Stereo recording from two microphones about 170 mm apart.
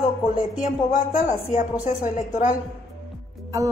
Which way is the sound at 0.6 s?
50° left (ahead or behind).